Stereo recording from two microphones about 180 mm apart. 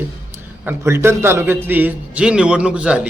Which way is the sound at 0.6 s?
10° right (ahead or behind).